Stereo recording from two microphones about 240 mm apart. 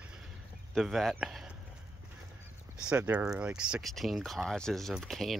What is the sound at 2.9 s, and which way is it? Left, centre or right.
Speech, centre.